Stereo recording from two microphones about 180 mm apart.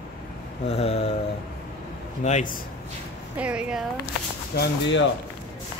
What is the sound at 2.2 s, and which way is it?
Speech, 45° left (ahead or behind).